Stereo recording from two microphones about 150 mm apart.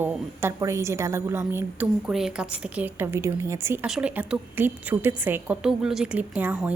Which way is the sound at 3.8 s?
5° right (ahead or behind).